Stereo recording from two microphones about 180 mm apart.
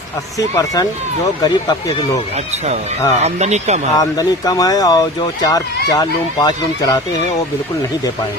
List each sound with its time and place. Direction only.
0.3 s speech: 20° left (ahead or behind)
3.2 s speech: 40° right (ahead or behind)
3.9 s speech: 20° left (ahead or behind)